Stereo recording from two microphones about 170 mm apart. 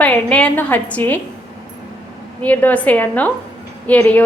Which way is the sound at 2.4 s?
10° left (ahead or behind).